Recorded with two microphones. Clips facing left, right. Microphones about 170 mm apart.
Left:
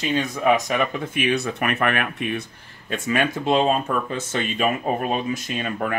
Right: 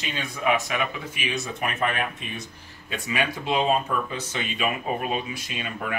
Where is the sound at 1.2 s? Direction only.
60° left (ahead or behind).